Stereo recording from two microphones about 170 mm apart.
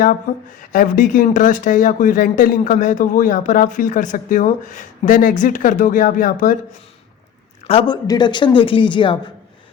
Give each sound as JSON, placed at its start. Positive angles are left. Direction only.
{"t": 0.7, "sound": "speech", "side_deg": 50}
{"t": 7.7, "sound": "a man's voice", "side_deg": 35}